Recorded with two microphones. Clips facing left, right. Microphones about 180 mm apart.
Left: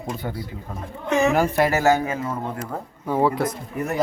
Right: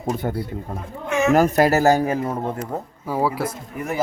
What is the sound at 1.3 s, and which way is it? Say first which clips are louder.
Speech: right 4 dB; 40° right (ahead or behind).